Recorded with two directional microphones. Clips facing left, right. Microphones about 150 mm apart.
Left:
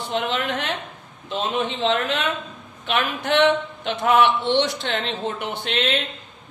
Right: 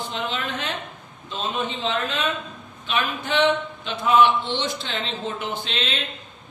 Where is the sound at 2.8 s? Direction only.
70° left (ahead or behind).